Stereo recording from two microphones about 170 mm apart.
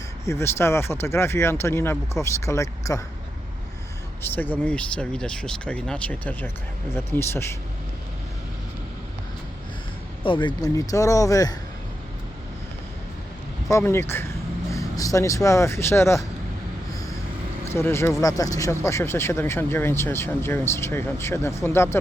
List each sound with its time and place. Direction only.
0.3 s speech: 15° left (ahead or behind)
4.2 s speech: 10° left (ahead or behind)
10.2 s speech: 30° left (ahead or behind)
13.7 s speech: 15° left (ahead or behind)
17.7 s speech: 15° left (ahead or behind)